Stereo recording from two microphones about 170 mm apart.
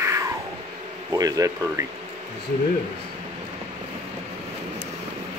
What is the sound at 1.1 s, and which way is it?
Speech, 20° right (ahead or behind).